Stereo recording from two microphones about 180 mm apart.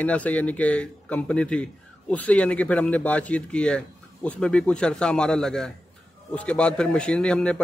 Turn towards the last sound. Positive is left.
turn(degrees=5)  # may be behind; listen again after turning